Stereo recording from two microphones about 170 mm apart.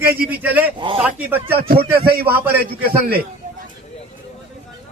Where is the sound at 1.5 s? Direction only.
65° right (ahead or behind).